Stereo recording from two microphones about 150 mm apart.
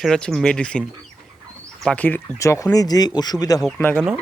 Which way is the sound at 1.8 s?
10° left (ahead or behind).